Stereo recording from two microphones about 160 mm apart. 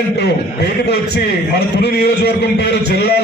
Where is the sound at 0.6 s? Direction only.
90° left.